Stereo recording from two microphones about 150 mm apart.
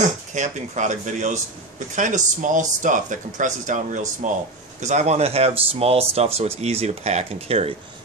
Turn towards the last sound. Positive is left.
turn(degrees=-40)  # may be behind; listen again after turning